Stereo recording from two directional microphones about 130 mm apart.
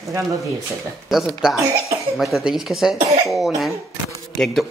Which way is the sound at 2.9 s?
55° right (ahead or behind).